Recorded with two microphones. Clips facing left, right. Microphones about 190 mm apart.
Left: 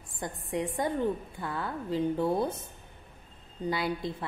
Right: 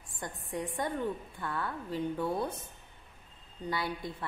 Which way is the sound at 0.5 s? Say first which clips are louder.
Left 4 dB; 25° left (ahead or behind).